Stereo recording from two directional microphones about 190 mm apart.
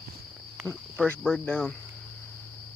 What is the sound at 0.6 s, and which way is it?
Speech, 5° left (ahead or behind).